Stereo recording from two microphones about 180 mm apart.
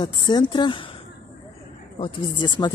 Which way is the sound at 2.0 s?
25° left (ahead or behind).